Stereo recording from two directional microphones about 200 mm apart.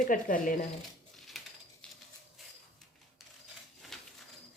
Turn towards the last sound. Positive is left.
turn(degrees=0)  # may be behind; listen again after turning